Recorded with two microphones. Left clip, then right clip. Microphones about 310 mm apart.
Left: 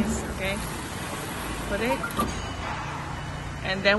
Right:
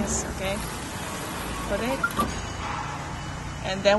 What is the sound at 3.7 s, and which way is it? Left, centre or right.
Speech, centre.